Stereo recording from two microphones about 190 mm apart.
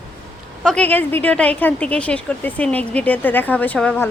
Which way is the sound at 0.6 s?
5° left (ahead or behind).